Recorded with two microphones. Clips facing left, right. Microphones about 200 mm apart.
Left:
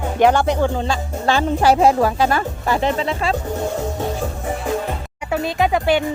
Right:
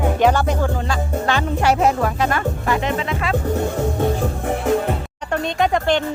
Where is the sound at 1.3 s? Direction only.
35° left (ahead or behind).